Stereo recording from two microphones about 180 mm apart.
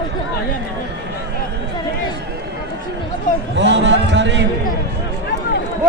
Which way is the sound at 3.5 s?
75° right (ahead or behind).